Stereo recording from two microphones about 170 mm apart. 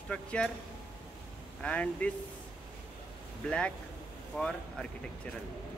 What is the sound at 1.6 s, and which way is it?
Speech, 10° left (ahead or behind).